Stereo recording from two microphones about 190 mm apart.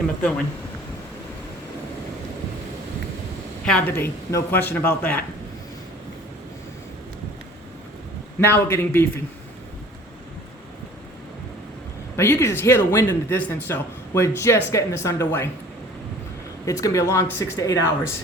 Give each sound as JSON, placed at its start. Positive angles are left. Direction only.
{"t": 0.2, "sound": "speech", "side_deg": 5}
{"t": 3.7, "sound": "speech", "side_deg": 10}
{"t": 8.4, "sound": "speech", "side_deg": 15}
{"t": 12.1, "sound": "speech", "side_deg": 15}
{"t": 16.6, "sound": "speech", "side_deg": 15}